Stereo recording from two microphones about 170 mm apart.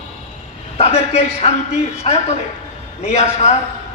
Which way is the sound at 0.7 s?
35° left (ahead or behind).